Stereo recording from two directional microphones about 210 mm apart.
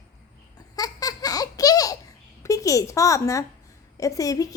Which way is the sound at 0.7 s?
15° left (ahead or behind).